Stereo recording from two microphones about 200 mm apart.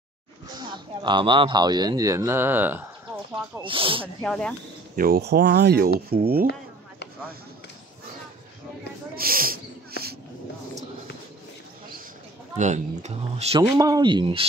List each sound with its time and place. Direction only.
0.6 s speech: 20° right (ahead or behind)
3.6 s speech: 25° right (ahead or behind)
4.2 s speech: 5° left (ahead or behind)
4.9 s speech: 50° right (ahead or behind)
9.1 s a sound: 45° right (ahead or behind)
12.5 s speech: 35° right (ahead or behind)
13.6 s speech: 15° right (ahead or behind)